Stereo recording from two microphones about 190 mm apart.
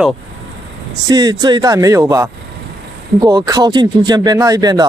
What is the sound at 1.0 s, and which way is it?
Speech, 20° right (ahead or behind).